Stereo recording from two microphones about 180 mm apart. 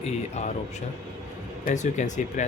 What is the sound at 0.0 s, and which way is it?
Speech, 40° left (ahead or behind).